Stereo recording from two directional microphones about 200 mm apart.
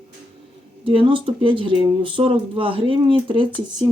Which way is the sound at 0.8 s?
25° right (ahead or behind).